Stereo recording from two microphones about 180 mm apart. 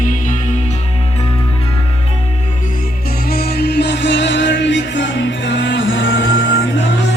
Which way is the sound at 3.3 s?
60° left (ahead or behind).